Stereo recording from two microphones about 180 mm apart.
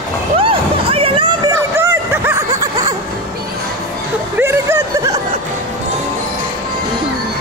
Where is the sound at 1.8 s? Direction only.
15° right (ahead or behind).